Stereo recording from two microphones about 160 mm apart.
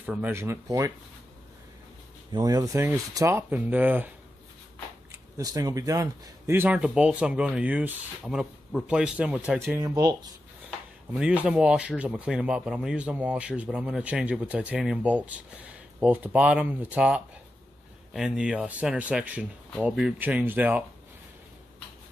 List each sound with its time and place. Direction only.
0.0 s speech: 10° right (ahead or behind)
2.3 s speech: 25° right (ahead or behind)
5.1 s speech: 20° right (ahead or behind)
11.1 s speech: 10° right (ahead or behind)